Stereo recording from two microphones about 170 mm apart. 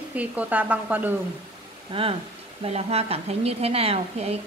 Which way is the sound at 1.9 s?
30° right (ahead or behind).